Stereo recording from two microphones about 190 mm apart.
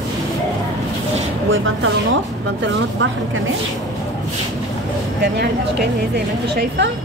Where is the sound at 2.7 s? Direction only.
75° right (ahead or behind).